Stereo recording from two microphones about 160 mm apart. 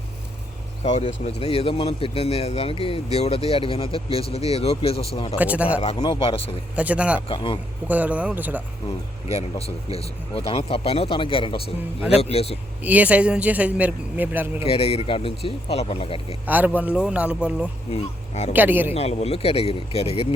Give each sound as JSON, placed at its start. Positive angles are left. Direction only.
{"t": 0.9, "sound": "speech", "side_deg": 45}
{"t": 5.4, "sound": "speech", "side_deg": -10}
{"t": 5.8, "sound": "speech", "side_deg": 35}
{"t": 6.7, "sound": "speech", "side_deg": -10}
{"t": 7.3, "sound": "speech", "side_deg": 30}
{"t": 7.9, "sound": "speech", "side_deg": -10}
{"t": 9.3, "sound": "speech", "side_deg": 40}
{"t": 12.8, "sound": "speech", "side_deg": -10}
{"t": 14.6, "sound": "speech", "side_deg": 40}
{"t": 16.5, "sound": "speech", "side_deg": -10}
{"t": 17.9, "sound": "speech", "side_deg": 45}
{"t": 18.5, "sound": "speech", "side_deg": -10}
{"t": 18.9, "sound": "speech", "side_deg": 40}